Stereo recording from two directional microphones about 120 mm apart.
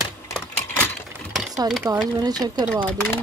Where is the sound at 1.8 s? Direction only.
20° right (ahead or behind).